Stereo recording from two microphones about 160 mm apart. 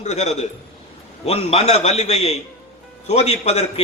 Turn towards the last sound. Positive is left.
turn(degrees=40)  # may be behind; listen again after turning